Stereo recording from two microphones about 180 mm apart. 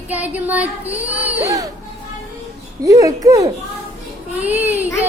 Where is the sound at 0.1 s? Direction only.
10° right (ahead or behind).